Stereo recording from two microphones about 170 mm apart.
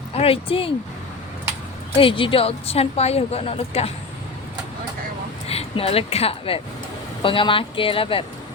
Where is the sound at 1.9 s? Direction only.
30° left (ahead or behind).